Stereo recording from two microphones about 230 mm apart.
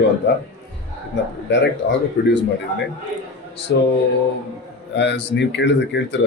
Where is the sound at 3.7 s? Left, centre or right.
Left.